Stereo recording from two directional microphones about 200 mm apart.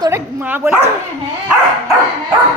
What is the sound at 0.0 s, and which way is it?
Dog, 10° right (ahead or behind).